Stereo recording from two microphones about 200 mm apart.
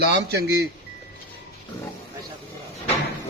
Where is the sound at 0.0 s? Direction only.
55° right (ahead or behind).